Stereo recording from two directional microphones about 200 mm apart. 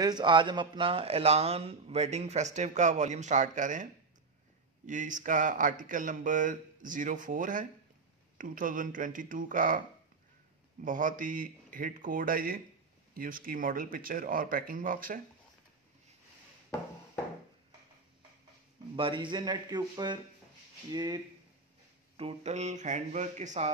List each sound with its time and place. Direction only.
0.0 s speech: 20° right (ahead or behind); by 3.8 s 40° right (ahead or behind)
4.8 s speech: 40° right (ahead or behind)
18.9 s speech: 25° right (ahead or behind)